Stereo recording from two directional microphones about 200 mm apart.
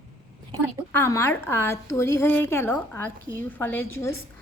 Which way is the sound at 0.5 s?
20° right (ahead or behind).